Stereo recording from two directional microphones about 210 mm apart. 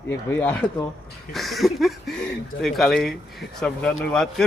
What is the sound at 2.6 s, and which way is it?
Speech, centre (ahead or behind).